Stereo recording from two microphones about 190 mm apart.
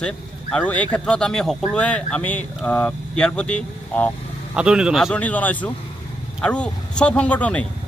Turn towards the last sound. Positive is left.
turn(degrees=5)  # may be behind; listen again after turning